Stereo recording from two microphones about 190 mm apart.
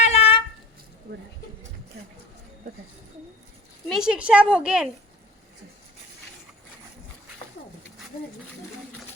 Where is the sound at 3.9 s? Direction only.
5° right (ahead or behind).